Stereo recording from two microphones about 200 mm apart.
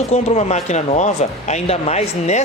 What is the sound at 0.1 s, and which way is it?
A man's voice, 35° left (ahead or behind).